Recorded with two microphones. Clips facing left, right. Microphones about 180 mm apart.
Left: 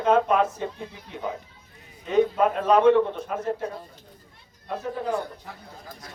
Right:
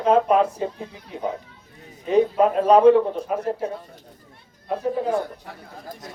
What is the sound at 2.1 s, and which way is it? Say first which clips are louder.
A man's voice: right 3 dB; 35° right (ahead or behind).